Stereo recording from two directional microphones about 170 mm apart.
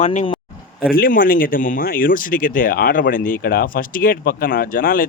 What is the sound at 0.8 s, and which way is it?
A man's voice, 60° left (ahead or behind).